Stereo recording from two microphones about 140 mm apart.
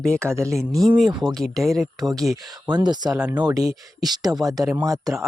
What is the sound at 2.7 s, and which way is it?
Speech, 30° right (ahead or behind).